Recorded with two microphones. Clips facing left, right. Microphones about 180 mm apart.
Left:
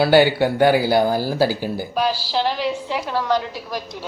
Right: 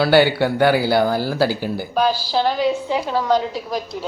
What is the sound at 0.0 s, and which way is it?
Speech, 15° left (ahead or behind).